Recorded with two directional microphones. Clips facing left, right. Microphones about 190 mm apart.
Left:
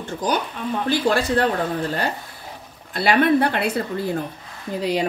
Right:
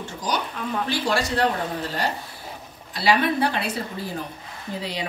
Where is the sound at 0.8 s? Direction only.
55° left (ahead or behind).